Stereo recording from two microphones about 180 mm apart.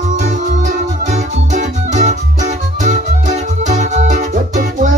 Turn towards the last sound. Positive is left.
turn(degrees=-45)  # may be behind; listen again after turning